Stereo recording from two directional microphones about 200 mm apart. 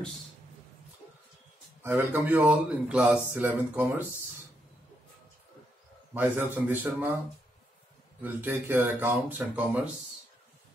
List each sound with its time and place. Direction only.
1.8 s a man's voice: 10° right (ahead or behind)
6.1 s a man's voice: 10° right (ahead or behind)
8.2 s a man's voice: 10° right (ahead or behind)